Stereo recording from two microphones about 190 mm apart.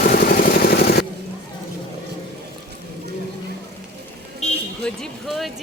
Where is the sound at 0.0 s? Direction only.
50° left (ahead or behind).